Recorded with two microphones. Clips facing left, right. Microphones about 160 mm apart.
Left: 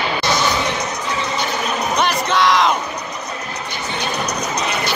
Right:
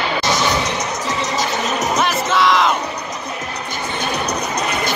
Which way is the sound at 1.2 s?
90° right.